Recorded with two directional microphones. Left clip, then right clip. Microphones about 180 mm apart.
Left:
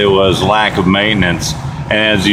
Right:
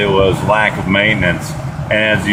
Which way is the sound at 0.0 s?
45° left (ahead or behind).